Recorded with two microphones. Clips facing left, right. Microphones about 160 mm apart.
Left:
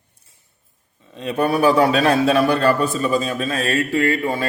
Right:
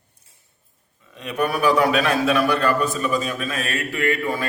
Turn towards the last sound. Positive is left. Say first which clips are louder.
# left 3 dB
turn(degrees=30)  # may be behind; listen again after turning